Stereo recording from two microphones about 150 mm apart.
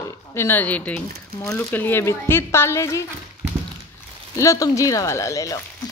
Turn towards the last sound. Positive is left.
turn(degrees=20)  # may be behind; listen again after turning